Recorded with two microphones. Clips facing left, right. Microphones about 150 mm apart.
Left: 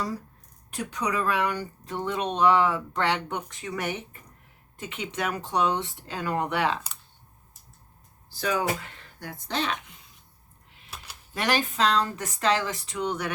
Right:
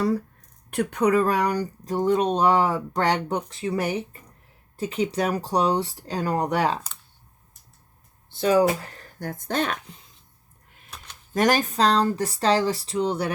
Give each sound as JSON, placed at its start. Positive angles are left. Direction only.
{"t": 0.7, "sound": "speech", "side_deg": -60}
{"t": 8.3, "sound": "speech", "side_deg": -30}
{"t": 10.9, "sound": "a sound", "side_deg": 10}
{"t": 11.3, "sound": "speech", "side_deg": -45}